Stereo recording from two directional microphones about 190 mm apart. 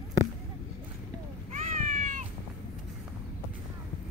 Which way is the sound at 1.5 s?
40° right (ahead or behind).